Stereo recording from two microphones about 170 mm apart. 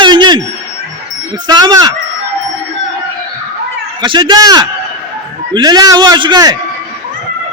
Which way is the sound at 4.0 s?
25° right (ahead or behind).